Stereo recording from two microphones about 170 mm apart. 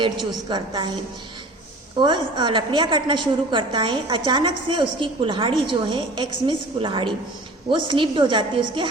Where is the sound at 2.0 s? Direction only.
25° right (ahead or behind).